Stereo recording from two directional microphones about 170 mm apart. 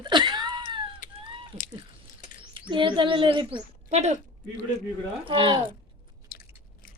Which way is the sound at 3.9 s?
40° right (ahead or behind).